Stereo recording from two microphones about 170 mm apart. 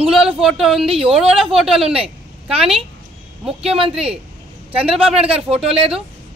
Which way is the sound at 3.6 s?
35° right (ahead or behind).